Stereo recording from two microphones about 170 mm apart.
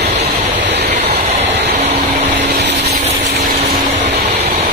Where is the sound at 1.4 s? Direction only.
85° right.